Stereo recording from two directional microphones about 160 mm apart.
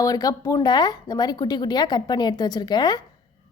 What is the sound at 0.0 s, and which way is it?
A woman's voice, 25° left (ahead or behind).